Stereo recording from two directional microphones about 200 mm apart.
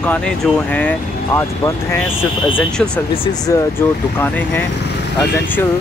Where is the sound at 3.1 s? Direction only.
25° left (ahead or behind).